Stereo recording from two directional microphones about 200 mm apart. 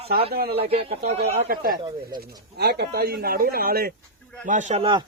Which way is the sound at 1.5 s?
45° right (ahead or behind).